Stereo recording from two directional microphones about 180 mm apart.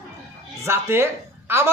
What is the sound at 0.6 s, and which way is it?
Speech, 15° right (ahead or behind).